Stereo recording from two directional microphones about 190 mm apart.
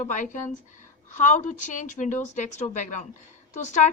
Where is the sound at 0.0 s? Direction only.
40° left (ahead or behind).